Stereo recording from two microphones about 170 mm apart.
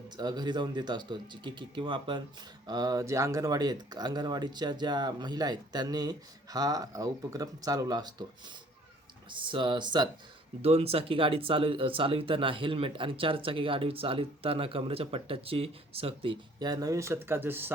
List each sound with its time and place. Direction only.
0.2 s speech: 25° right (ahead or behind)
9.3 s speech: 30° right (ahead or behind); by 17.7 s 10° right (ahead or behind)